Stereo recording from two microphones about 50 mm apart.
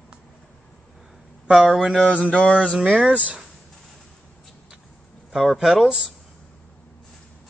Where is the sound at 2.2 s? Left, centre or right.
Left.